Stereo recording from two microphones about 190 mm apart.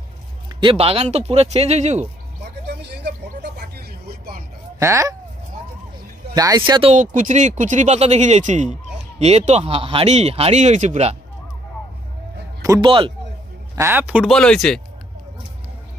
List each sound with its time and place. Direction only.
0.6 s speech: 30° right (ahead or behind)
2.6 s a sound: 60° right (ahead or behind)
4.7 s speech: 15° right (ahead or behind)
6.3 s speech: 20° right (ahead or behind)
7.0 s speech: 40° right (ahead or behind)
12.6 s speech: 20° right (ahead or behind)
13.7 s speech: 10° right (ahead or behind)
14.3 s speech: 5° left (ahead or behind)